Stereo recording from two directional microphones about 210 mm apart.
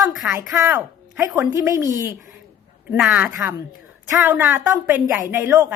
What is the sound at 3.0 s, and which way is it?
A woman's voice, 5° right (ahead or behind).